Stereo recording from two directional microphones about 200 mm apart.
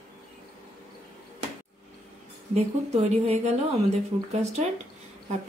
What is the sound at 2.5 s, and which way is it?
Speech, 30° right (ahead or behind).